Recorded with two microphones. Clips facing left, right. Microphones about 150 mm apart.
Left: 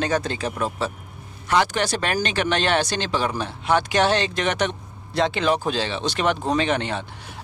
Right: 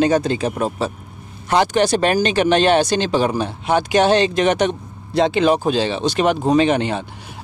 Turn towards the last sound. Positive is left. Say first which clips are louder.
# right 7 dB
turn(degrees=-15)  # may be behind; listen again after turning